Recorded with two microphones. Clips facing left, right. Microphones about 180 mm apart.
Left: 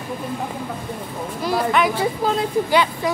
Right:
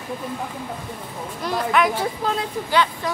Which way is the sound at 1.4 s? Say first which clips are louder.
Left 1 dB; 5° left (ahead or behind).